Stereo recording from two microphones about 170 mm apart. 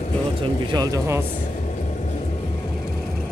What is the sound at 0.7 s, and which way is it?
Speech, 20° right (ahead or behind).